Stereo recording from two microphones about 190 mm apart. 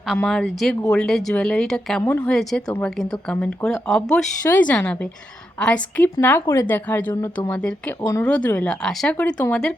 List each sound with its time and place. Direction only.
0.1 s speech: centre (ahead or behind)